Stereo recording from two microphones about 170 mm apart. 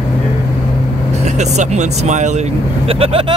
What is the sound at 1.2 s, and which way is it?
Speech, 40° right (ahead or behind).